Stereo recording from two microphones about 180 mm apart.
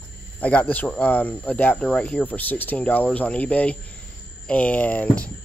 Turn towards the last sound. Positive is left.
turn(degrees=10)  # may be behind; listen again after turning